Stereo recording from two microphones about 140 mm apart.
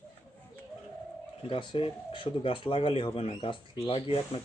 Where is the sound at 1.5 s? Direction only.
35° left (ahead or behind).